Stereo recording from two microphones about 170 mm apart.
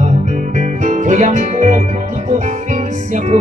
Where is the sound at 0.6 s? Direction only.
45° right (ahead or behind).